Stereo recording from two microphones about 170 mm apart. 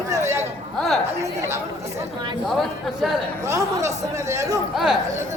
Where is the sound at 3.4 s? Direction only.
15° right (ahead or behind).